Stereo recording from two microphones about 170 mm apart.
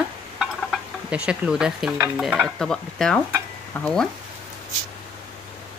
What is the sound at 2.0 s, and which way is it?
Stir, 10° right (ahead or behind).